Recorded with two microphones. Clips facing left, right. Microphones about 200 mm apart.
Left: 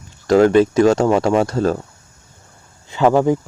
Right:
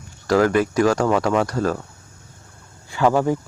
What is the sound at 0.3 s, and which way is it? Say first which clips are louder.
Speech: left 5 dB; 25° left (ahead or behind).